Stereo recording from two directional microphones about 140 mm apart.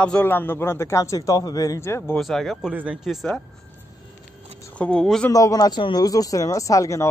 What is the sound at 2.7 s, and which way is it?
Speech, 10° right (ahead or behind).